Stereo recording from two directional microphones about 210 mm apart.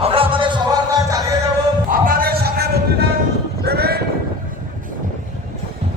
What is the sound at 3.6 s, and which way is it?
Clip-clop, 50° right (ahead or behind).